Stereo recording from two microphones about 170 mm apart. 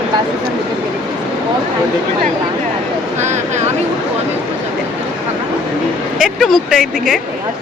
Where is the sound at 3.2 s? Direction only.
45° right (ahead or behind).